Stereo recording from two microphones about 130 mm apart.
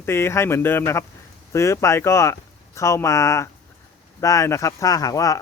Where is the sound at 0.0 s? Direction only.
20° left (ahead or behind).